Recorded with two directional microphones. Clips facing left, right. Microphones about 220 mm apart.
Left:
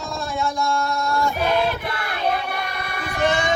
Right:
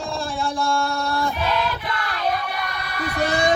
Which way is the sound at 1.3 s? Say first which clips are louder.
Left 3 dB; 50° left (ahead or behind).